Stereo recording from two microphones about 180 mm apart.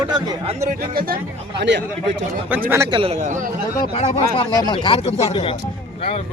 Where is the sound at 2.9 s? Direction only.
30° right (ahead or behind).